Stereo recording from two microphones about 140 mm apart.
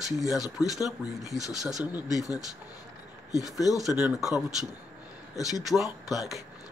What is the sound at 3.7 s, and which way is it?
Speech, 5° right (ahead or behind).